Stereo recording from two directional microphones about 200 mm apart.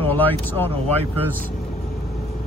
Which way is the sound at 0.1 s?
10° left (ahead or behind).